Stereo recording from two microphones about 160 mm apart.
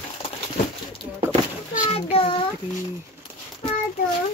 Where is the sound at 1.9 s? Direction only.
35° left (ahead or behind).